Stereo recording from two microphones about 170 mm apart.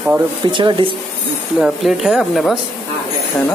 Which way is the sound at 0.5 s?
30° right (ahead or behind).